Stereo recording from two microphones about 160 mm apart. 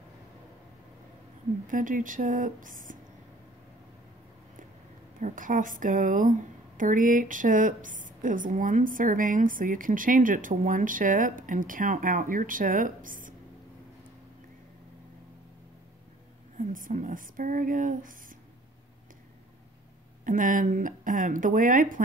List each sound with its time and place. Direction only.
1.7 s a woman's voice: 55° right (ahead or behind)
5.2 s a woman's voice: 55° right (ahead or behind)
16.5 s a woman's voice: 55° right (ahead or behind)
20.2 s a woman's voice: 55° right (ahead or behind)